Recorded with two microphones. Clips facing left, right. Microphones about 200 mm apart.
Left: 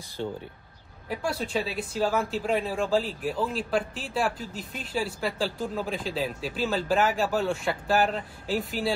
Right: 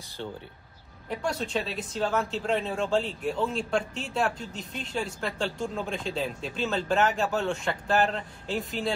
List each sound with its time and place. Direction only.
0.2 s speech: 15° left (ahead or behind)
1.0 s speech: 5° left (ahead or behind)